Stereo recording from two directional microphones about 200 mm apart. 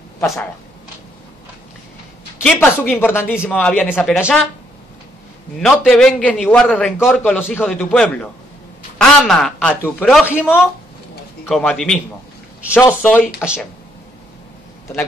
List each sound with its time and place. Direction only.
2.4 s a man's voice: 10° left (ahead or behind)
5.6 s a man's voice: centre (ahead or behind)
11.4 s a man's voice: centre (ahead or behind)